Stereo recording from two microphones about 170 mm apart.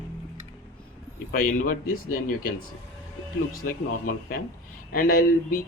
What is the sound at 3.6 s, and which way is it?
Speech, 55° left (ahead or behind).